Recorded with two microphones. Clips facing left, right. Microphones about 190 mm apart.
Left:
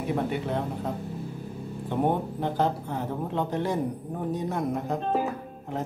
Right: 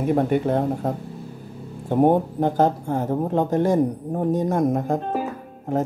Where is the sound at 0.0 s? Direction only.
50° right (ahead or behind).